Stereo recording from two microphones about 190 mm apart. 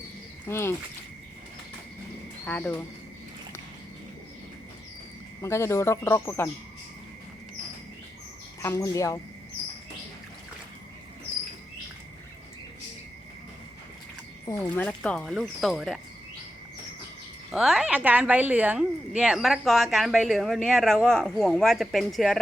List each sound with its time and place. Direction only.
0.4 s speech: 15° left (ahead or behind)
2.4 s speech: 10° left (ahead or behind)
5.4 s speech: 15° left (ahead or behind)
8.6 s speech: 15° left (ahead or behind)
14.6 s speech: 5° left (ahead or behind)
17.5 s speech: centre (ahead or behind)